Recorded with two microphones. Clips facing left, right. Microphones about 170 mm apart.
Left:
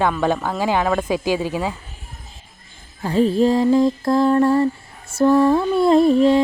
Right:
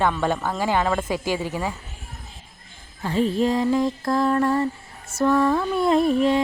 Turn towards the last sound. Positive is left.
turn(degrees=30)  # may be behind; listen again after turning